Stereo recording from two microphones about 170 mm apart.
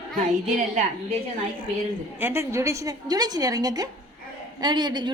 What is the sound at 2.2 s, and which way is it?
A woman's voice, 15° right (ahead or behind).